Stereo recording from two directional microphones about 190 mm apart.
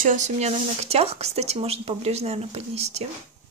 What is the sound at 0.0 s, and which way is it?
Speech, 40° right (ahead or behind).